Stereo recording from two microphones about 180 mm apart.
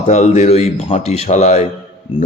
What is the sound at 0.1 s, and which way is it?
Speech, 40° left (ahead or behind).